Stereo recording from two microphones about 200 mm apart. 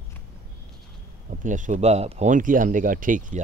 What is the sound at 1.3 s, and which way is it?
Speech, 40° right (ahead or behind).